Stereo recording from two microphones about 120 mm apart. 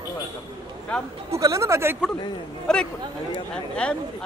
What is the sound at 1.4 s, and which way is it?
Speech, 25° right (ahead or behind).